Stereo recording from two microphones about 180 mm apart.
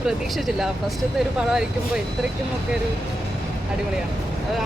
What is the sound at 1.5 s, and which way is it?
Speech, 5° right (ahead or behind).